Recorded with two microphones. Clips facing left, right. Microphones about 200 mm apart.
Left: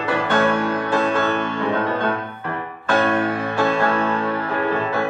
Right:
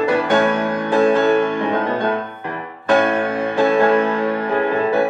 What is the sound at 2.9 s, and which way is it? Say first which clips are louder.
Music: right 3 dB; 15° right (ahead or behind).